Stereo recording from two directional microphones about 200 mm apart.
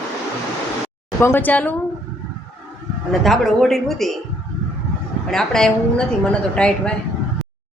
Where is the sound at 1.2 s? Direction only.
10° left (ahead or behind).